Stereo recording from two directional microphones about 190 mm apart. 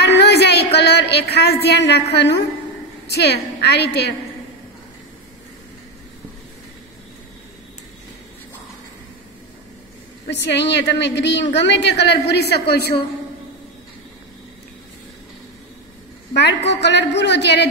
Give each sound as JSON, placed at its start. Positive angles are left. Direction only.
{"t": 0.0, "sound": "a sound", "side_deg": 60}
{"t": 0.7, "sound": "a woman's voice", "side_deg": 60}
{"t": 10.3, "sound": "a woman's voice", "side_deg": 65}
{"t": 16.3, "sound": "a woman's voice", "side_deg": 65}